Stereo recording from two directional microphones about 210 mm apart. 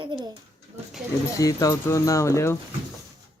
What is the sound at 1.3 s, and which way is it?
A man's voice, 15° left (ahead or behind).